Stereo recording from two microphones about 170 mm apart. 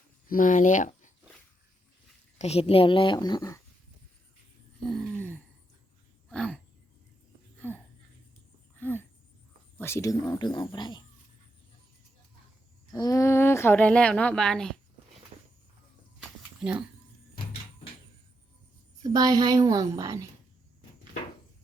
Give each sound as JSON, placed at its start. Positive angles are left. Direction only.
{"t": 0.3, "sound": "speech", "side_deg": 50}
{"t": 2.4, "sound": "a woman's voice", "side_deg": 35}
{"t": 6.2, "sound": "a sound", "side_deg": 5}
{"t": 8.8, "sound": "a sound", "side_deg": 10}
{"t": 9.7, "sound": "a woman's voice", "side_deg": 15}
{"t": 12.9, "sound": "a woman's voice", "side_deg": 20}
{"t": 16.6, "sound": "speech", "side_deg": -5}
{"t": 19.0, "sound": "a woman's voice", "side_deg": -20}